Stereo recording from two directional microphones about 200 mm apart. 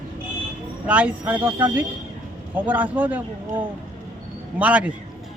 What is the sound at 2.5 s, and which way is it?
A man's voice, 10° right (ahead or behind).